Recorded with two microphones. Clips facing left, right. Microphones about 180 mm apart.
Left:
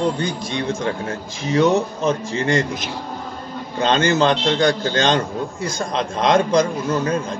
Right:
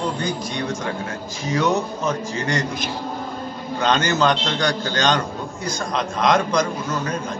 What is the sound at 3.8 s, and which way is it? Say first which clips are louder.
A man's voice: left 2 dB; 30° left (ahead or behind).